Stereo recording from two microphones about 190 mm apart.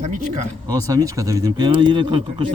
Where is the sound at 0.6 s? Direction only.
20° right (ahead or behind).